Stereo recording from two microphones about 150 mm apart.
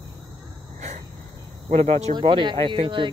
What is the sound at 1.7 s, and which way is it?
Speech, 45° right (ahead or behind).